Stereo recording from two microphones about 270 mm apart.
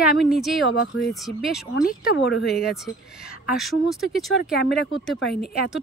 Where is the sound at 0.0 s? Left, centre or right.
Centre.